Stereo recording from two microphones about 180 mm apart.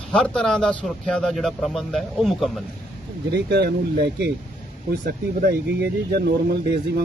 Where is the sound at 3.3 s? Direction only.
65° right (ahead or behind).